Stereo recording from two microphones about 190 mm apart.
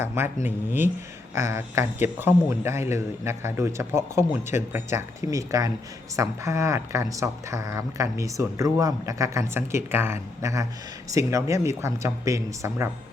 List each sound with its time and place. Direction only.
0.0 s speech: 15° right (ahead or behind)